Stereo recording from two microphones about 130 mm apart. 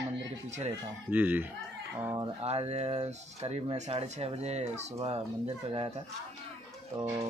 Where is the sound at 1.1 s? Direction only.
15° right (ahead or behind).